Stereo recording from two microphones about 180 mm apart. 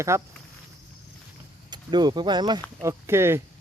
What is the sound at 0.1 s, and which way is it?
Speech, 15° right (ahead or behind).